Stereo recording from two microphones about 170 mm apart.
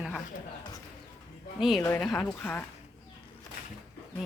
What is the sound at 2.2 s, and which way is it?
Speech, 10° left (ahead or behind).